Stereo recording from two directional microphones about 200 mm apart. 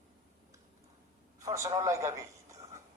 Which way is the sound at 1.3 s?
15° right (ahead or behind).